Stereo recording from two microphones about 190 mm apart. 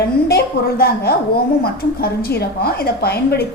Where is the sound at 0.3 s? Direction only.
55° left (ahead or behind).